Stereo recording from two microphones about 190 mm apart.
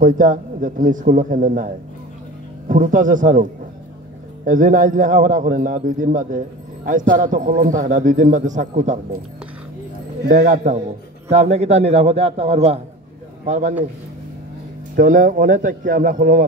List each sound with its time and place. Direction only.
0.0 s a man's voice: 45° right (ahead or behind)
2.7 s a man's voice: 45° right (ahead or behind)
4.5 s a man's voice: 45° right (ahead or behind)
10.2 s a man's voice: 40° right (ahead or behind)
15.0 s a man's voice: 40° right (ahead or behind)